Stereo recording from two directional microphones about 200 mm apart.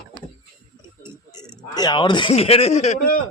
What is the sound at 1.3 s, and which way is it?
Speech, 20° left (ahead or behind).